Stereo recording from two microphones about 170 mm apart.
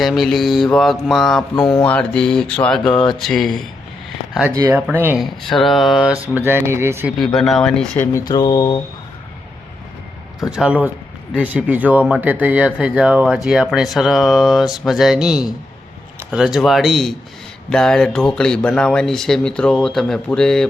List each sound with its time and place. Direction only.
0.0 s speech: centre (ahead or behind)
4.5 s speech: 15° right (ahead or behind)
5.5 s speech: centre (ahead or behind)
6.2 s speech: 10° right (ahead or behind)
7.3 s speech: centre (ahead or behind)
8.2 s mantra: 25° left (ahead or behind)
10.5 s speech: 5° right (ahead or behind)